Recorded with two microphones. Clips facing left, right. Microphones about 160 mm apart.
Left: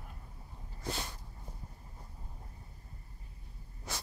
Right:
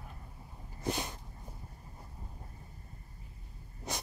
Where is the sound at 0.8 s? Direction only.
20° right (ahead or behind).